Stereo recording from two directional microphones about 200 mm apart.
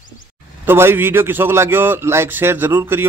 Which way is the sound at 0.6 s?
10° right (ahead or behind).